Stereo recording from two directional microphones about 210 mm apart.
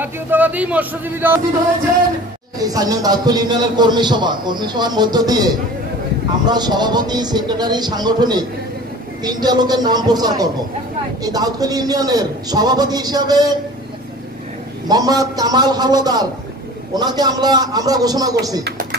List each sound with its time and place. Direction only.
0.0 s speech: 10° right (ahead or behind)
2.6 s a man's voice: 15° right (ahead or behind)
14.9 s a man's voice: 20° right (ahead or behind)
18.6 s a sound: 50° right (ahead or behind)